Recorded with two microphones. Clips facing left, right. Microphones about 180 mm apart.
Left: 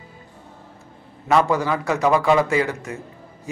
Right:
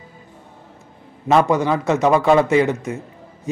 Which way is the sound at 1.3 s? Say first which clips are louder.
Right 3 dB; 20° right (ahead or behind).